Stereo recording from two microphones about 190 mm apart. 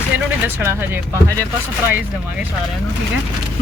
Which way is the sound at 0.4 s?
10° right (ahead or behind).